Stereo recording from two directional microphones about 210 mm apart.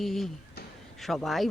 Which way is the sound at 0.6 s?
50° left (ahead or behind).